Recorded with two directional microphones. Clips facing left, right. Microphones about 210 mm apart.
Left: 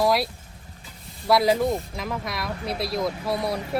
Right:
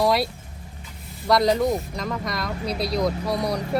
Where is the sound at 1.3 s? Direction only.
5° left (ahead or behind).